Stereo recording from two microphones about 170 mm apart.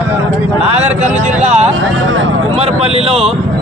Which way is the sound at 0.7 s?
40° right (ahead or behind).